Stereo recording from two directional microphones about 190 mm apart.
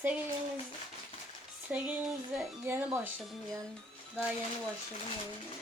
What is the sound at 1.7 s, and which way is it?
Speech, 5° right (ahead or behind).